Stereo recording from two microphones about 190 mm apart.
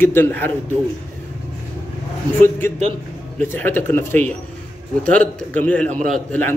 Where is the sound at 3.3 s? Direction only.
10° left (ahead or behind).